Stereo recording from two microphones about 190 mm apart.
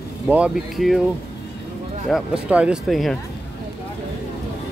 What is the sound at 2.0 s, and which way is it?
Speech, 5° right (ahead or behind).